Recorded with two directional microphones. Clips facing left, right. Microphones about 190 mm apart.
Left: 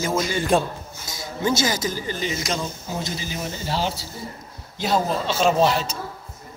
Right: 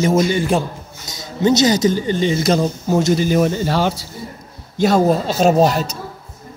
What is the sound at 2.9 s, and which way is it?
Speech, 70° right (ahead or behind).